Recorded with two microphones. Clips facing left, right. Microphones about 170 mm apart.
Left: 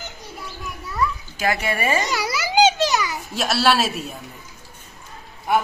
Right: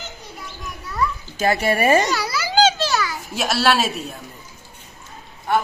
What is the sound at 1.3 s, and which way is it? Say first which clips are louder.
Speech: right 4 dB; 30° right (ahead or behind).